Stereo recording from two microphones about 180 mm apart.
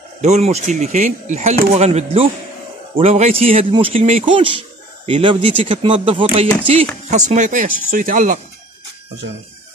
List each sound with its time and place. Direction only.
0.2 s speech: 40° right (ahead or behind)